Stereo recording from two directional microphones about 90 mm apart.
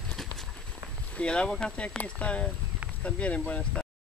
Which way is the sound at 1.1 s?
10° left (ahead or behind).